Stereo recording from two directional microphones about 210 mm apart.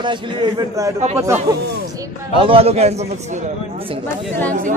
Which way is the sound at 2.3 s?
25° right (ahead or behind).